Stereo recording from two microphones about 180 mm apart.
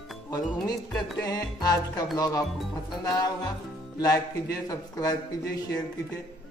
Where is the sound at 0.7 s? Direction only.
20° left (ahead or behind).